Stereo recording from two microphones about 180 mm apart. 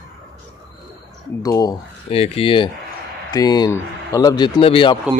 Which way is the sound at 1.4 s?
20° left (ahead or behind).